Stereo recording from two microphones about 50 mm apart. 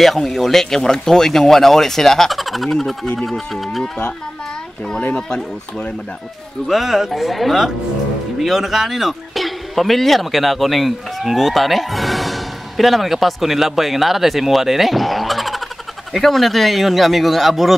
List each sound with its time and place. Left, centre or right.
0.0 s speech: centre
5.1 s speech: left
6.7 s speech: centre